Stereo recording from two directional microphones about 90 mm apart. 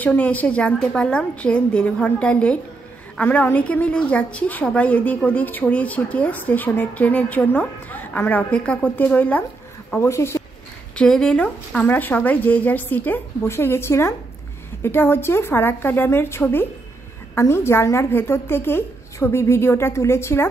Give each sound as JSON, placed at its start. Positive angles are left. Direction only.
{"t": 0.0, "sound": "a woman's voice", "side_deg": 15}
{"t": 9.9, "sound": "speech", "side_deg": 30}
{"t": 11.0, "sound": "speech", "side_deg": 5}